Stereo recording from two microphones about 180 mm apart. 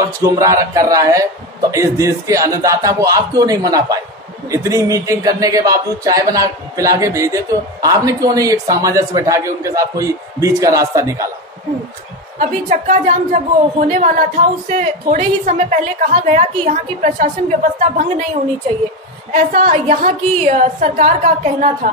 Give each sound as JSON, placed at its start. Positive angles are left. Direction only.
{"t": 0.2, "sound": "a man's voice", "side_deg": -20}
{"t": 12.4, "sound": "a woman's voice", "side_deg": -45}
{"t": 19.3, "sound": "a woman's voice", "side_deg": -45}